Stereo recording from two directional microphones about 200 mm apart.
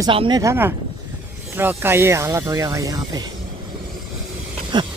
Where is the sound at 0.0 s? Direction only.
25° right (ahead or behind).